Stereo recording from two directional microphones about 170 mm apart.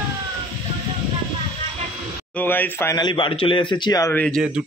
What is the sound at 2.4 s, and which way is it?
Speech, 10° left (ahead or behind).